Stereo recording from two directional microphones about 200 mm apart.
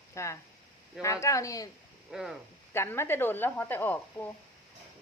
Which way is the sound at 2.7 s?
10° left (ahead or behind).